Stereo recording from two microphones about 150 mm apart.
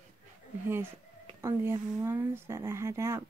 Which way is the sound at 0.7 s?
15° right (ahead or behind).